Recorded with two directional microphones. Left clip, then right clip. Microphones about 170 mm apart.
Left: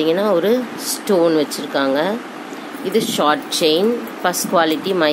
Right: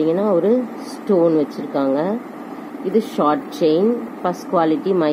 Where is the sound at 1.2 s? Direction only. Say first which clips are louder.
Left 1 dB; 5° left (ahead or behind).